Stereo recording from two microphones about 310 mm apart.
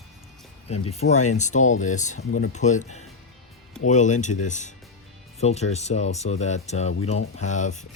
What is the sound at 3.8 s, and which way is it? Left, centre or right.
Speech, left.